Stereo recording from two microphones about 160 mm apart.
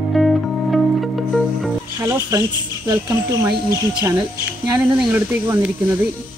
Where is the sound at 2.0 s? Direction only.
15° right (ahead or behind).